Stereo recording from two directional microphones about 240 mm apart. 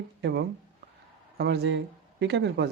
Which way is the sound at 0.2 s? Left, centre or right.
Right.